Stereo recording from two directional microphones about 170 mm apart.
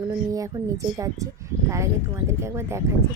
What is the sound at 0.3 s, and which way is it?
Speech, 20° right (ahead or behind).